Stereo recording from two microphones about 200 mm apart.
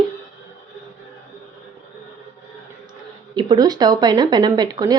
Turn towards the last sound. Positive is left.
turn(degrees=-20)  # may be behind; listen again after turning